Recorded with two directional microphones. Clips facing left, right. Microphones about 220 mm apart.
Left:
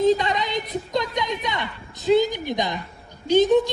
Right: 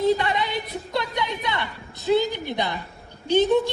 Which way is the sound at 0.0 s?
15° left (ahead or behind).